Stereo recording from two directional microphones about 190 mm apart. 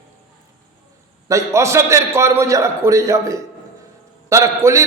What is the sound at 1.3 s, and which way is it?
A man's voice, 15° right (ahead or behind).